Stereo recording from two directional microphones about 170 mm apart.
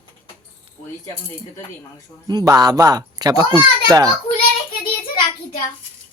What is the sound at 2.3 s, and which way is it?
A child's voice, 25° right (ahead or behind).